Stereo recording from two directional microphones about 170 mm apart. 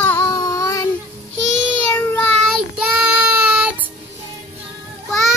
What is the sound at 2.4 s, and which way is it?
Child singing, 5° right (ahead or behind).